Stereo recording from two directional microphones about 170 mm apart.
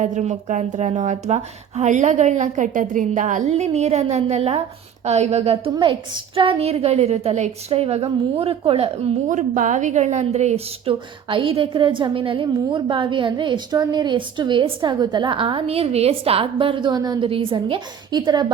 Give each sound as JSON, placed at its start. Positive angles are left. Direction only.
{"t": 0.0, "sound": "a woman's voice", "side_deg": -45}